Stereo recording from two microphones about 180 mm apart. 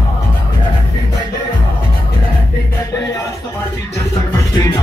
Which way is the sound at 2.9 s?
20° left (ahead or behind).